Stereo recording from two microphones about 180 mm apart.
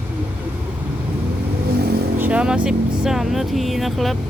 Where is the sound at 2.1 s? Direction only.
10° right (ahead or behind).